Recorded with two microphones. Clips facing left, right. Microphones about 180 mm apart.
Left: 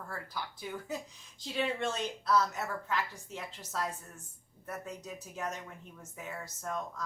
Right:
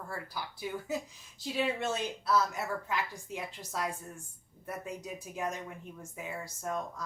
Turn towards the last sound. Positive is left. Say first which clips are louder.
# right 2 dB
turn(degrees=-10)  # may be behind; listen again after turning